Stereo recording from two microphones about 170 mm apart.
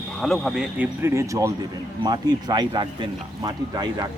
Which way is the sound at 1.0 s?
15° right (ahead or behind).